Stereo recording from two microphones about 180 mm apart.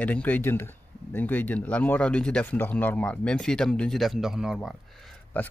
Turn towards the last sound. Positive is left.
turn(degrees=5)  # may be behind; listen again after turning